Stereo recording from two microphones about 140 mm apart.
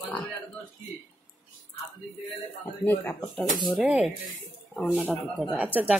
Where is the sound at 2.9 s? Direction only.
10° left (ahead or behind).